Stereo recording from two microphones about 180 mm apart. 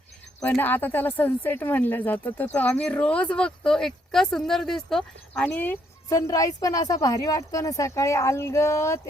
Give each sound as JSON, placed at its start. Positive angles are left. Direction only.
{"t": 0.4, "sound": "speech", "side_deg": 10}